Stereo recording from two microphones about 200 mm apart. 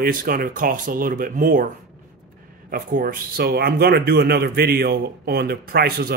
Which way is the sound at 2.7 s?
45° right (ahead or behind).